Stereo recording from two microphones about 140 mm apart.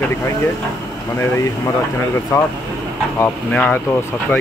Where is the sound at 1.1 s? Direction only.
20° left (ahead or behind).